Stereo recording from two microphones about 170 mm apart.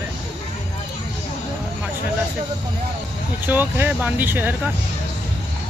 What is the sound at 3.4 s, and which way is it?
Speech, 10° right (ahead or behind).